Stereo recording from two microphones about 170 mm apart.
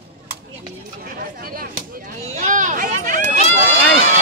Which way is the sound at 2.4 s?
50° right (ahead or behind).